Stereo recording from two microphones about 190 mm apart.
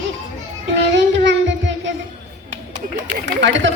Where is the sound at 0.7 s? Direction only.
70° right (ahead or behind).